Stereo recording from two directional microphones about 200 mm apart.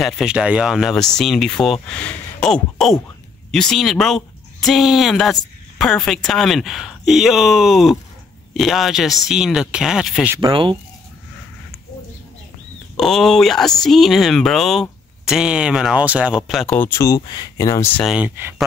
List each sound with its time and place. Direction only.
0.0 s speech: 5° right (ahead or behind)
10.3 s speech: 20° right (ahead or behind)
12.9 s speech: centre (ahead or behind)
18.0 s speech: 5° right (ahead or behind)